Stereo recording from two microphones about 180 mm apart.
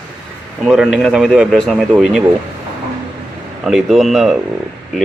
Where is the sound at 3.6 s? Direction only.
Centre (ahead or behind).